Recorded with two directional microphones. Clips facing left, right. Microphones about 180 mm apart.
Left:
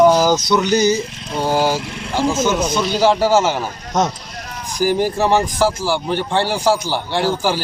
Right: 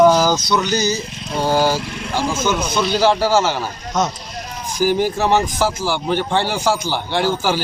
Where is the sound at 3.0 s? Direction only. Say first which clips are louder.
Left 2 dB; 10° left (ahead or behind).